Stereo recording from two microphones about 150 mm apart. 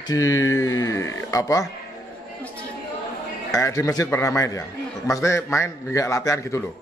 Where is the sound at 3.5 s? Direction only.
20° left (ahead or behind).